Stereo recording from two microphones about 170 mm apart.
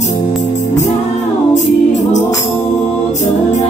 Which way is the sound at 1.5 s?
45° left (ahead or behind).